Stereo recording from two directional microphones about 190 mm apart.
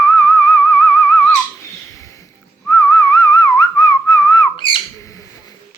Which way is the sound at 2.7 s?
15° left (ahead or behind).